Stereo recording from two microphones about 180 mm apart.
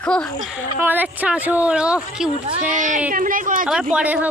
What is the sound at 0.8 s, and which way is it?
Speech, 10° right (ahead or behind).